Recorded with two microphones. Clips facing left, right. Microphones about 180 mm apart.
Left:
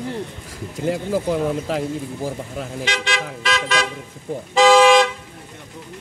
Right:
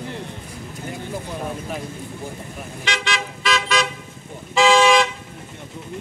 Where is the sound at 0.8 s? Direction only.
90° left.